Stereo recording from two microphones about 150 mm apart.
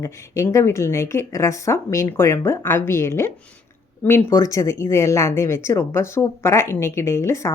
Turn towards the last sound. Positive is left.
turn(degrees=20)  # may be behind; listen again after turning